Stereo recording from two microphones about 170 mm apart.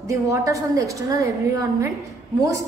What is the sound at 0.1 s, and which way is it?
A woman's voice, 20° right (ahead or behind).